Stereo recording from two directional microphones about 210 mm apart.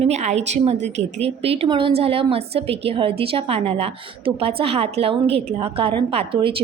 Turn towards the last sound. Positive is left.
turn(degrees=-25)  # may be behind; listen again after turning